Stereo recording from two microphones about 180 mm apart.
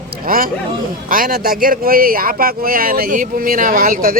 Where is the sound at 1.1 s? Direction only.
50° right (ahead or behind).